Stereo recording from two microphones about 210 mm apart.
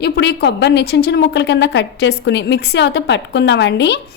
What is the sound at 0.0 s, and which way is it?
A woman's voice, 50° left (ahead or behind).